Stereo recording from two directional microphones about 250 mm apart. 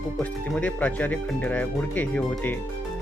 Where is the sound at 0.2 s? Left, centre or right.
Centre.